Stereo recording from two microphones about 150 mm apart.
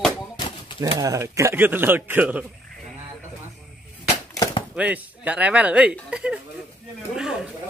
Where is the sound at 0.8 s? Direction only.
20° right (ahead or behind).